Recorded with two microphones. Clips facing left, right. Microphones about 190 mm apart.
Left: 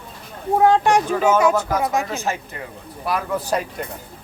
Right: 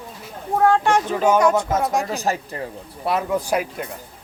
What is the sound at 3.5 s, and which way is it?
Speech, 5° right (ahead or behind).